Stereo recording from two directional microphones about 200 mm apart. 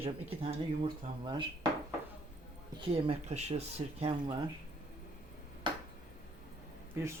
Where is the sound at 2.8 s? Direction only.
30° right (ahead or behind).